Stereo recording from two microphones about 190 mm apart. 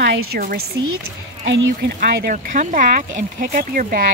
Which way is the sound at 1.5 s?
65° right (ahead or behind).